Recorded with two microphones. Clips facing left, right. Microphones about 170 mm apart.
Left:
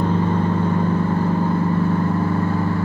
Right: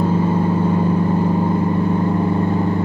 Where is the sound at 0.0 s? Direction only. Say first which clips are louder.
Right 2 dB; 10° right (ahead or behind).